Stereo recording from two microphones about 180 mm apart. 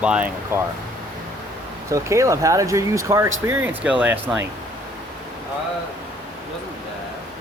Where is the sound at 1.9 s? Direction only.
15° right (ahead or behind).